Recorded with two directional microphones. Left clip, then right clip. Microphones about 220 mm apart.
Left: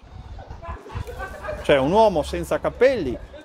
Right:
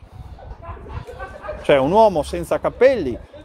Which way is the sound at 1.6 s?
25° right (ahead or behind).